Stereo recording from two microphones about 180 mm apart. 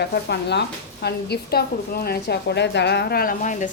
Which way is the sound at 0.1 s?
70° left (ahead or behind).